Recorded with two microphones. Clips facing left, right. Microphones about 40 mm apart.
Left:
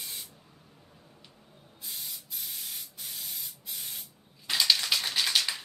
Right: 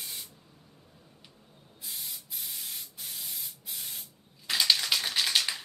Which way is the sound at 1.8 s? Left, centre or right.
Centre.